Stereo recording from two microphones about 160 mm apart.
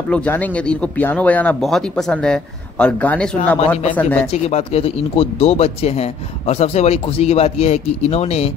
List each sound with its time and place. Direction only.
0.1 s speech: 10° left (ahead or behind)
4.3 s speech: 40° left (ahead or behind)